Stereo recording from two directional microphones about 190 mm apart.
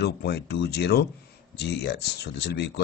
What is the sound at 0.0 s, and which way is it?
Speech, 60° left (ahead or behind).